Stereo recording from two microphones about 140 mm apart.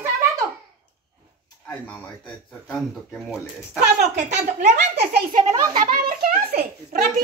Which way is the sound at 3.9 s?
55° right (ahead or behind).